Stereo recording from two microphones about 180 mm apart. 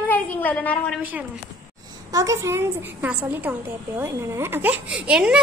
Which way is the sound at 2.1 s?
15° right (ahead or behind).